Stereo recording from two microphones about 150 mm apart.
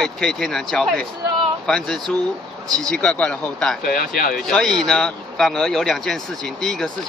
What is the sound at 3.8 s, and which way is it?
Speech, 80° left.